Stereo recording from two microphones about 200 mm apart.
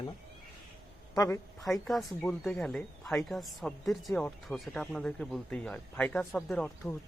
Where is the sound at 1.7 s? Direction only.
Centre (ahead or behind).